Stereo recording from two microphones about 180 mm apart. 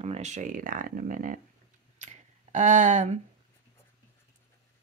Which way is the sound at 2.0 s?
40° right (ahead or behind).